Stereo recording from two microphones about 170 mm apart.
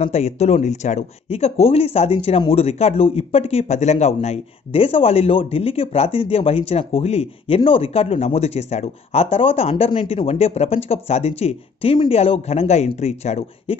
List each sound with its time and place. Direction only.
0.0 s speech: 40° left (ahead or behind)